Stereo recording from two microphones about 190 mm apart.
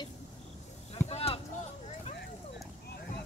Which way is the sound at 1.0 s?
35° left (ahead or behind).